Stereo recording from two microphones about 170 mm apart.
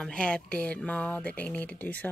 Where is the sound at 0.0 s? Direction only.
5° left (ahead or behind).